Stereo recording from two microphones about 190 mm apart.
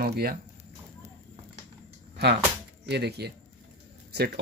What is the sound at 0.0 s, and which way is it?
Speech, 55° right (ahead or behind).